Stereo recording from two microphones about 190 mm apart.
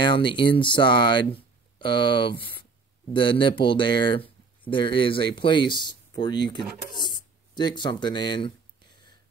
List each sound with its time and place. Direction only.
0.0 s speech: 25° left (ahead or behind)